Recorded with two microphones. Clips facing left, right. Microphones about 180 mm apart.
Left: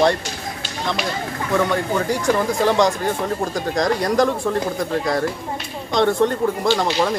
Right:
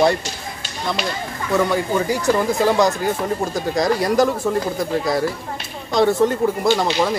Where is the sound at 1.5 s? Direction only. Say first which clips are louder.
Right 1 dB; 5° right (ahead or behind).